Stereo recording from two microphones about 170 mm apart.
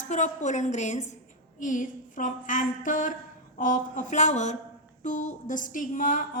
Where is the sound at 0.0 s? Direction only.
45° left (ahead or behind).